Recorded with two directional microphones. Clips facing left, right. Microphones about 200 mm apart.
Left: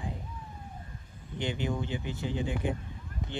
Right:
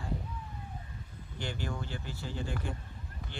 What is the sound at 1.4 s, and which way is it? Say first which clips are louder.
Speech: left 6 dB; 20° left (ahead or behind).